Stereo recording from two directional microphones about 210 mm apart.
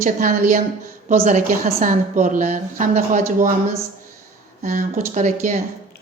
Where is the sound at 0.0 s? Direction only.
40° right (ahead or behind).